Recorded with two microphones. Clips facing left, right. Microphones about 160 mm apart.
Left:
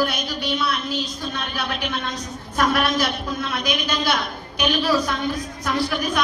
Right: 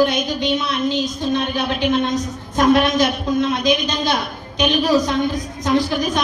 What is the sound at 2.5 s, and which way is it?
A woman's voice, 20° right (ahead or behind).